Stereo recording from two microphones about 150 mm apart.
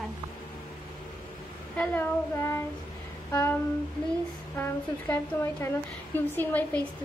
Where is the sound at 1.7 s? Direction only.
15° left (ahead or behind).